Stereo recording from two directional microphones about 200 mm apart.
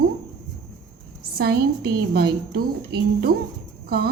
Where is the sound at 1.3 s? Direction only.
50° right (ahead or behind).